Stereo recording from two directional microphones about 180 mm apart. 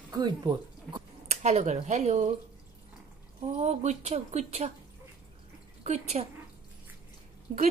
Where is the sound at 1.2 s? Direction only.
40° right (ahead or behind).